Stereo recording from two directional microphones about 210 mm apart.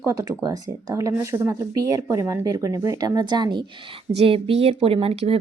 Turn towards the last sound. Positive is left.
turn(degrees=-30)  # may be behind; listen again after turning